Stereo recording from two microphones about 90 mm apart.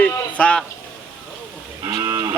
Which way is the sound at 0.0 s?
10° left (ahead or behind).